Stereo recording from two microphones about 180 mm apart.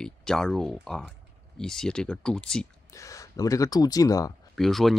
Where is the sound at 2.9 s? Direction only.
20° left (ahead or behind).